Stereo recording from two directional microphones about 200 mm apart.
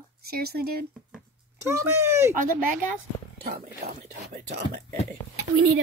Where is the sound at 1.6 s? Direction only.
15° right (ahead or behind).